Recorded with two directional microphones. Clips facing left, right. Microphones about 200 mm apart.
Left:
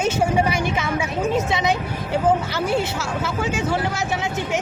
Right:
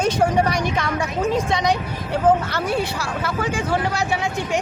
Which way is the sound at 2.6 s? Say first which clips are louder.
Left 3 dB; 25° left (ahead or behind).